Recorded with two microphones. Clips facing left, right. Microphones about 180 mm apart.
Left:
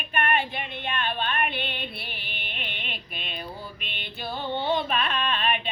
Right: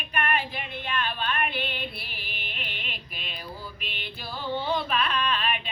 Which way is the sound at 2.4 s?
5° right (ahead or behind).